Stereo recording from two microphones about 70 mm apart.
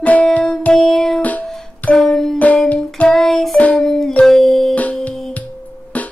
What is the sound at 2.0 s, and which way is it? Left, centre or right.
Music, centre.